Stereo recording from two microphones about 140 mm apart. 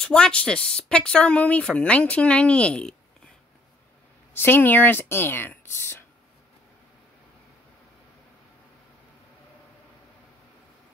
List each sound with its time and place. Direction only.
0.0 s speech: 5° left (ahead or behind)
4.3 s speech: 15° left (ahead or behind)